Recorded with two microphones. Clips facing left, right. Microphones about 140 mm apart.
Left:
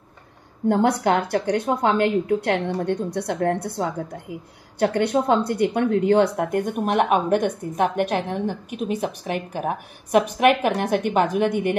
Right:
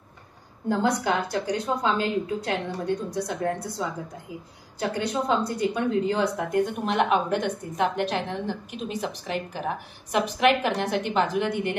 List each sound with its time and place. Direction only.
0.7 s a woman's voice: 60° left (ahead or behind)